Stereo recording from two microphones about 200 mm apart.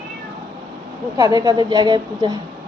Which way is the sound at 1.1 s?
20° right (ahead or behind).